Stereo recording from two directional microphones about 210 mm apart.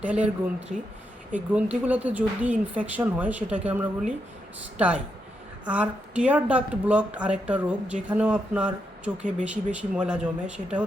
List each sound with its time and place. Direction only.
0.0 s speech: 5° right (ahead or behind)
0.7 s speech: 35° right (ahead or behind)
1.3 s speech: 5° right (ahead or behind)